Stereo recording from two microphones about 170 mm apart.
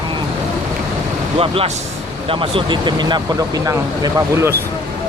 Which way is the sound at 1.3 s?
35° right (ahead or behind).